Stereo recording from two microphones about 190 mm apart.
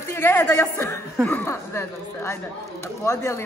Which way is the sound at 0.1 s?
15° left (ahead or behind).